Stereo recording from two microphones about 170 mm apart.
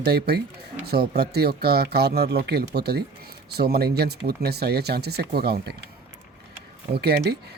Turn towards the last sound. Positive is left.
turn(degrees=-70)  # may be behind; listen again after turning